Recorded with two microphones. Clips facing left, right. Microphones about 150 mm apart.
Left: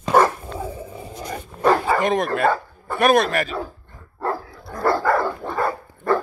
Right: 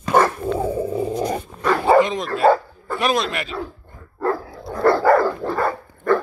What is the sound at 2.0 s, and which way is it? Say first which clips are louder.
Speech: right 2 dB; 55° left (ahead or behind).